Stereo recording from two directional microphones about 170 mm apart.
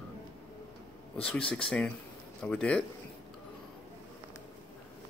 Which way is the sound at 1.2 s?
5° left (ahead or behind).